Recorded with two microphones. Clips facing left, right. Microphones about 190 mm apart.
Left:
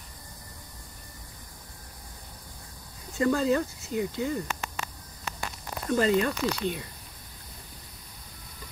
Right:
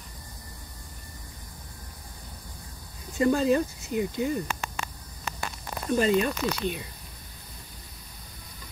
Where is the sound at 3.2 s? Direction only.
20° right (ahead or behind).